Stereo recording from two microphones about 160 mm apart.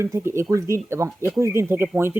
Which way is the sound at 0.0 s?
15° right (ahead or behind).